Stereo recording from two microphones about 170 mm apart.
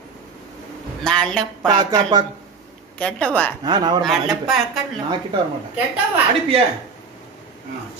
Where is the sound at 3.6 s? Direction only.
25° right (ahead or behind).